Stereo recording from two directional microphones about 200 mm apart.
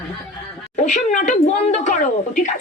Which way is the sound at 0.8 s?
35° left (ahead or behind).